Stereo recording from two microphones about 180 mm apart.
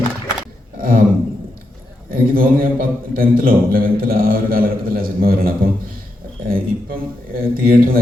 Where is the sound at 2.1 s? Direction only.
55° right (ahead or behind).